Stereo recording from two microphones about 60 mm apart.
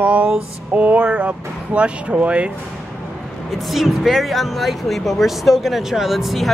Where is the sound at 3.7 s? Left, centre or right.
Centre.